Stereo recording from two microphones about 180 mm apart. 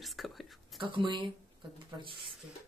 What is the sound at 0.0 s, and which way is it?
Whispering, centre (ahead or behind).